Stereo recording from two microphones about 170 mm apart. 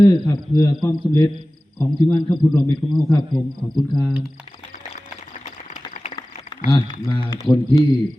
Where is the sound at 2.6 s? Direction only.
Centre (ahead or behind).